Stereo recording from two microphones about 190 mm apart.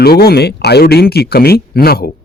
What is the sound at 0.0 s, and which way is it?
Speech, 55° left (ahead or behind).